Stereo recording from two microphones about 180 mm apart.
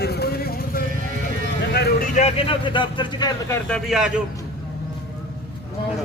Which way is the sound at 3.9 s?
5° right (ahead or behind).